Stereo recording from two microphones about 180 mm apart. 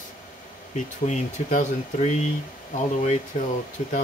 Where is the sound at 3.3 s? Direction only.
40° left (ahead or behind).